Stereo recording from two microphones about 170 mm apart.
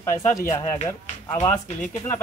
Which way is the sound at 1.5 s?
45° left (ahead or behind).